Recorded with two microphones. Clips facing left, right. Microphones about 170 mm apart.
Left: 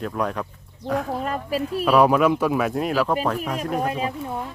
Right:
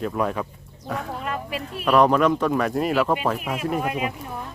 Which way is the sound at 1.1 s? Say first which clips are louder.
Left 4 dB; 40° left (ahead or behind).